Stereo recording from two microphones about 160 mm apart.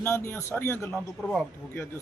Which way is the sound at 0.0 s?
15° left (ahead or behind).